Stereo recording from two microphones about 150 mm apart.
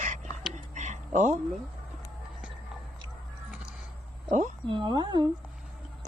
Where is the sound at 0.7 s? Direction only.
55° right (ahead or behind).